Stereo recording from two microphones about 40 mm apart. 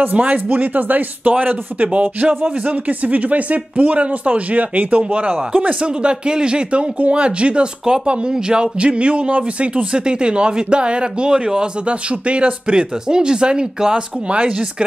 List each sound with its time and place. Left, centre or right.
0.1 s speech: right
0.5 s speech: right
1.9 s speech: right